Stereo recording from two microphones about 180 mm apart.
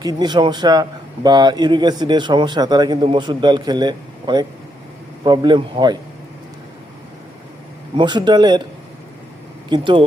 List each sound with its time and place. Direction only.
0.0 s speech: 20° right (ahead or behind)
7.9 s speech: 25° right (ahead or behind)
9.6 s speech: 25° right (ahead or behind)